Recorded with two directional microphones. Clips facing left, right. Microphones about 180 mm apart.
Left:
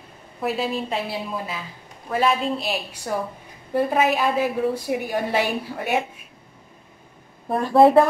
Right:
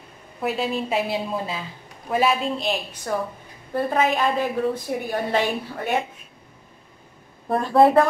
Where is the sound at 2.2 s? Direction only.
Centre (ahead or behind).